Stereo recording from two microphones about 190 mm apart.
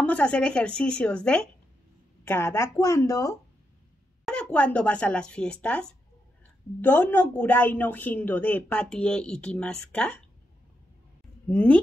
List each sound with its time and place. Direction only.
0.0 s a woman's voice: 5° left (ahead or behind)
4.3 s a woman's voice: 5° left (ahead or behind)
11.5 s a woman's voice: 5° left (ahead or behind)